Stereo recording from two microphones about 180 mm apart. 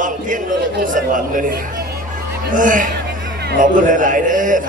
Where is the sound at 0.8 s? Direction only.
45° right (ahead or behind).